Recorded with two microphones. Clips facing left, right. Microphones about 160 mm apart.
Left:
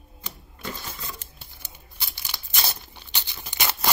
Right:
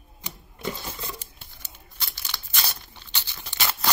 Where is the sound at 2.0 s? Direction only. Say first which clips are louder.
Even; 10° left (ahead or behind).